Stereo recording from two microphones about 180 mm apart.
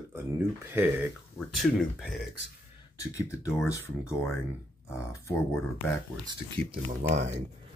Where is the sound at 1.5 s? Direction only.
Centre (ahead or behind).